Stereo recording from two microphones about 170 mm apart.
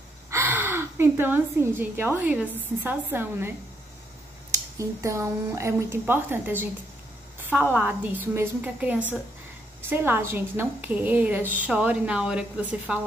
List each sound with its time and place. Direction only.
0.3 s a woman's voice: 10° right (ahead or behind)
7.7 s speech: 10° right (ahead or behind)